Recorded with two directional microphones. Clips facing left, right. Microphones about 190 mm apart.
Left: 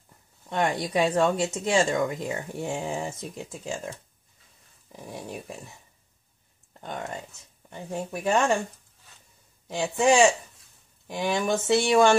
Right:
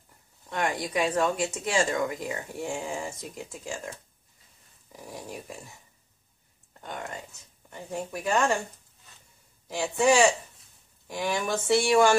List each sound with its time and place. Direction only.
0.5 s speech: 25° left (ahead or behind)
7.7 s speech: 25° left (ahead or behind)
9.7 s speech: 20° left (ahead or behind)